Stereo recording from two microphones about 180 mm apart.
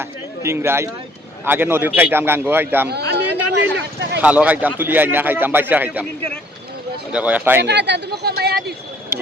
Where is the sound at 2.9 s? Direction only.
65° right (ahead or behind).